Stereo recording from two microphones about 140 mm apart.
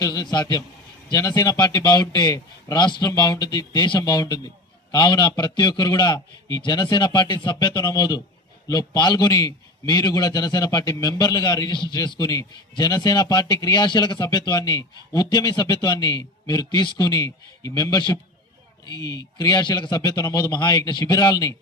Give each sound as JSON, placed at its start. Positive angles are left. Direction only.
{"t": 0.0, "sound": "a man's voice", "side_deg": 25}